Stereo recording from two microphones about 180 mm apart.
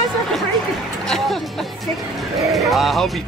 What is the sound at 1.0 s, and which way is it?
Music, centre (ahead or behind).